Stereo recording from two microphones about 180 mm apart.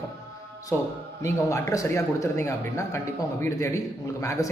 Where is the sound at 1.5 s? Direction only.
20° left (ahead or behind).